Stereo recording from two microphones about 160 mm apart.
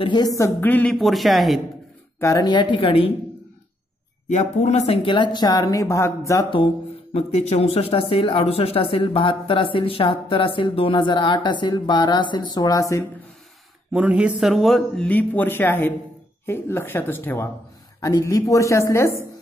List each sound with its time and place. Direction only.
0.0 s speech: 25° left (ahead or behind); by 0.9 s 10° left (ahead or behind)
0.9 s a man's voice: centre (ahead or behind)
2.1 s speech: 20° left (ahead or behind)
4.3 s speech: 45° left (ahead or behind); by 6.4 s 20° left (ahead or behind)
7.2 s speech: 40° left (ahead or behind); by 13.0 s 20° left (ahead or behind)
13.9 s a man's voice: 5° right (ahead or behind); by 19.1 s 20° left (ahead or behind)